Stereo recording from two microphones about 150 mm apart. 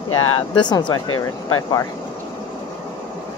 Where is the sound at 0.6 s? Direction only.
30° left (ahead or behind).